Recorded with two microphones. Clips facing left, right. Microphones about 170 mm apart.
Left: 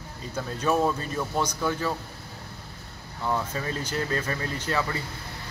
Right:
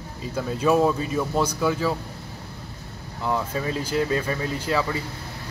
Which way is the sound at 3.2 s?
5° right (ahead or behind).